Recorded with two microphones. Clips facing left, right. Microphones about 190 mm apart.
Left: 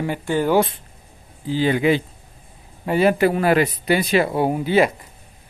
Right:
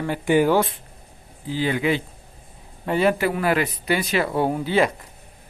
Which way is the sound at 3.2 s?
35° left (ahead or behind).